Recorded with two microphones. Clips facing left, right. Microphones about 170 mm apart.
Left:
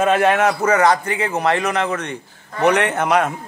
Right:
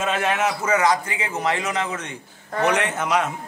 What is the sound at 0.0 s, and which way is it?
A man's voice, 55° left (ahead or behind).